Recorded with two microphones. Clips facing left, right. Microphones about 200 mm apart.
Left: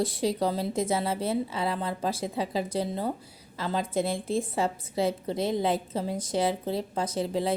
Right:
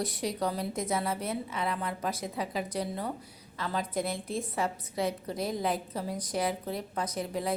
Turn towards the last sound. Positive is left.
turn(degrees=30)  # may be behind; listen again after turning